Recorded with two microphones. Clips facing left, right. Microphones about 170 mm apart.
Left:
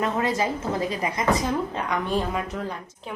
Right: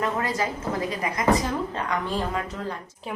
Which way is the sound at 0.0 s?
25° left (ahead or behind).